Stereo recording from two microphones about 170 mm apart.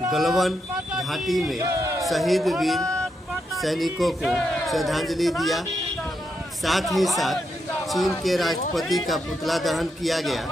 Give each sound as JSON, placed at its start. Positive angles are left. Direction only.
{"t": 0.1, "sound": "speech", "side_deg": 0}
{"t": 1.6, "sound": "a sound", "side_deg": -20}
{"t": 2.0, "sound": "speech", "side_deg": 0}
{"t": 6.6, "sound": "speech", "side_deg": 0}